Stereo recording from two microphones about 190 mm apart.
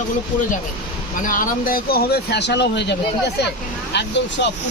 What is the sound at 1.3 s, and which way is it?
Speech, 45° left (ahead or behind).